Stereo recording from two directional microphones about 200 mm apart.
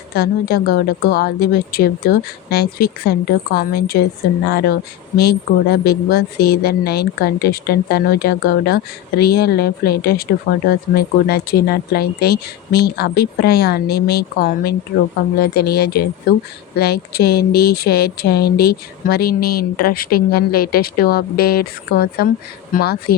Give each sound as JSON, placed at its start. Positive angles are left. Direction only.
{"t": 0.2, "sound": "speech", "side_deg": 50}